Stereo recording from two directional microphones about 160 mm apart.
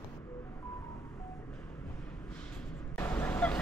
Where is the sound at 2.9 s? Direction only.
10° left (ahead or behind).